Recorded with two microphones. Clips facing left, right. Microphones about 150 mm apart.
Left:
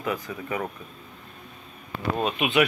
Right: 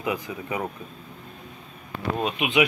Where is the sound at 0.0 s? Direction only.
15° right (ahead or behind).